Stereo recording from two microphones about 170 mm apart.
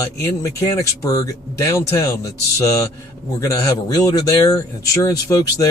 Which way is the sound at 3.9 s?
20° left (ahead or behind).